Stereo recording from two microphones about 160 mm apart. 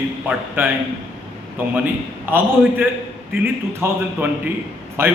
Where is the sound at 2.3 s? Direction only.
10° right (ahead or behind).